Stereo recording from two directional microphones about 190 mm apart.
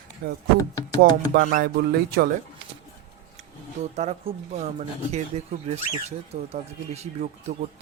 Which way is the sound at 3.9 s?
35° right (ahead or behind).